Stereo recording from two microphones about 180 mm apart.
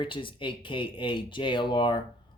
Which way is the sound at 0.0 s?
30° left (ahead or behind).